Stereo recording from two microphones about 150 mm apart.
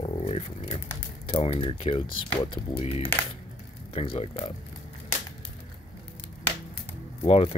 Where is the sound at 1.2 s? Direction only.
40° left (ahead or behind).